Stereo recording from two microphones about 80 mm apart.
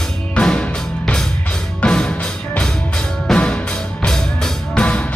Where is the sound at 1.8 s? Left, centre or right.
Centre.